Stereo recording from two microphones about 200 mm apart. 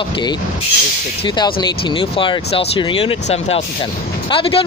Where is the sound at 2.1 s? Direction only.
25° left (ahead or behind).